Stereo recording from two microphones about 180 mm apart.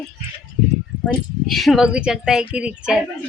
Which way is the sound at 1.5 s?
Centre (ahead or behind).